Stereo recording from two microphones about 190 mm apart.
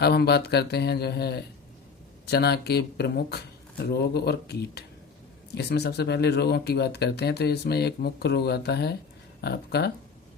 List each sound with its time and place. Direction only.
0.0 s speech: 55° left (ahead or behind)